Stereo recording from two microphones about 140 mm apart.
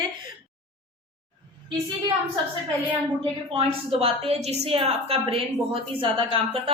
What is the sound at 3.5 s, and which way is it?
A woman's voice, 45° right (ahead or behind).